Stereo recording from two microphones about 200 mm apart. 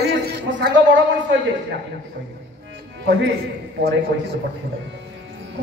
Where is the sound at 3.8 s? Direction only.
55° right (ahead or behind).